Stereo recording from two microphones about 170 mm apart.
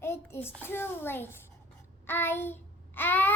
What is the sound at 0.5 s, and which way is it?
Speech, 15° left (ahead or behind).